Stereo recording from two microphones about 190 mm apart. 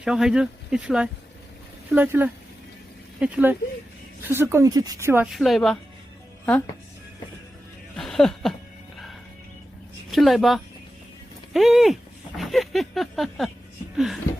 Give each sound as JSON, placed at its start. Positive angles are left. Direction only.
{"t": 0.0, "sound": "speech", "side_deg": -5}
{"t": 5.3, "sound": "speech", "side_deg": 0}
{"t": 7.9, "sound": "a sound", "side_deg": 0}
{"t": 10.1, "sound": "speech", "side_deg": 0}
{"t": 12.4, "sound": "a sound", "side_deg": 0}
{"t": 13.9, "sound": "speech", "side_deg": 0}